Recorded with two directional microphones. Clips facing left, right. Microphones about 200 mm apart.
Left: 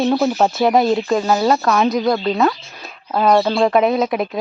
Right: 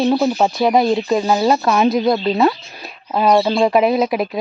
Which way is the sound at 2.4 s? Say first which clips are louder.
Right 2 dB; 10° right (ahead or behind).